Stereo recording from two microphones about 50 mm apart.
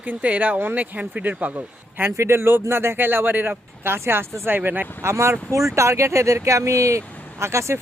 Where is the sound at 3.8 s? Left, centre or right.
Right.